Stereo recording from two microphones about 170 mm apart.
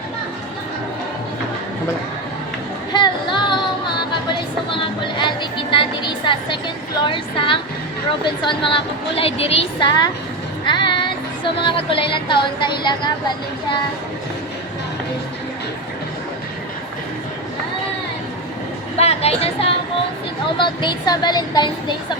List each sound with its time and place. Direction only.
2.9 s female singing: 25° left (ahead or behind)
7.1 s a woman's voice: 30° left (ahead or behind)
10.7 s music: 30° left (ahead or behind)
18.9 s a sound: 35° left (ahead or behind)
20.6 s speech: 25° left (ahead or behind)